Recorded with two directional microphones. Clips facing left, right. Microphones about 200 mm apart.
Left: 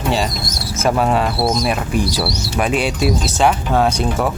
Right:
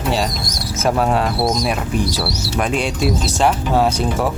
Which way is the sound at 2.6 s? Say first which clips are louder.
Left 2 dB; 5° left (ahead or behind).